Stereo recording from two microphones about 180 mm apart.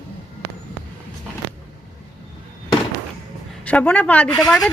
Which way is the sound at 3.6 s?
10° left (ahead or behind).